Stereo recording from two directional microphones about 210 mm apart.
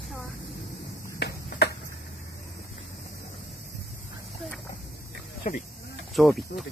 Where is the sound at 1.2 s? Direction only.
50° left (ahead or behind).